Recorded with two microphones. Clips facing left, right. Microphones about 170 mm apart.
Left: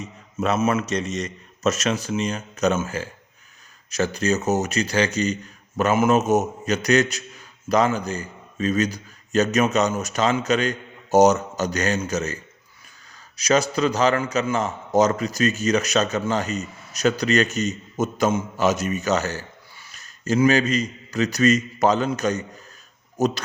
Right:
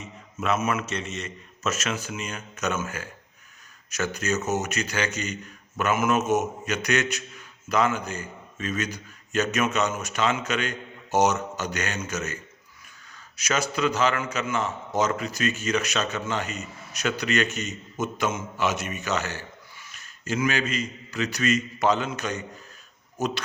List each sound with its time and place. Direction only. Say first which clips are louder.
0.0 s a man's voice: left 5 dB; 35° left (ahead or behind)